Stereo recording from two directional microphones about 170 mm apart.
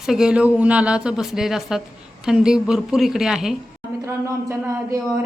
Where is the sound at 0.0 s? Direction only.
5° right (ahead or behind).